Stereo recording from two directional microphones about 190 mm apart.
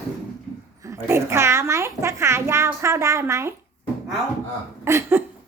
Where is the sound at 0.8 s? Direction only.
15° right (ahead or behind).